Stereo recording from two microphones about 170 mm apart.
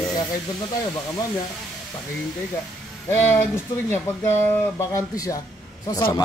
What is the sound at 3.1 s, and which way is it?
Speech, 10° left (ahead or behind).